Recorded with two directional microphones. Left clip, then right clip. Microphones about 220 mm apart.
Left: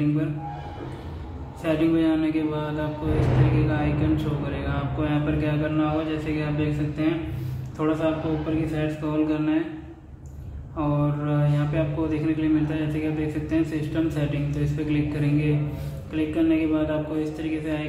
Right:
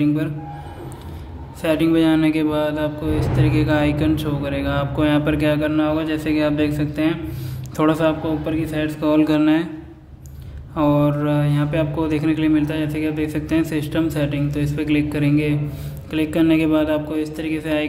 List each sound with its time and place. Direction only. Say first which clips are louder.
1.6 s speech: right 5 dB; 45° right (ahead or behind)
10.8 s speech: right 9 dB; 50° right (ahead or behind)